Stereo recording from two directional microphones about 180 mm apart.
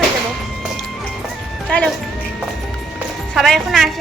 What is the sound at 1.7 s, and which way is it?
Speech, 5° left (ahead or behind).